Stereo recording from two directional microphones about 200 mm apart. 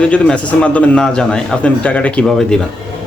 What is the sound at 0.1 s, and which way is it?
Speech, 5° left (ahead or behind).